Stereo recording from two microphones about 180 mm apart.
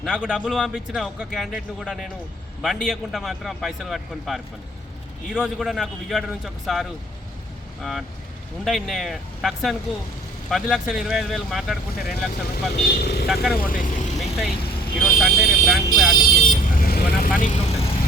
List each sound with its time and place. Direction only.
0.0 s speech: 5° right (ahead or behind)
12.9 s speech: 60° left (ahead or behind)
13.2 s speech: centre (ahead or behind)
13.5 s speech: 50° left (ahead or behind)
14.2 s vehicle: centre (ahead or behind)
15.0 s speech: centre (ahead or behind)
16.5 s speech: 50° left (ahead or behind)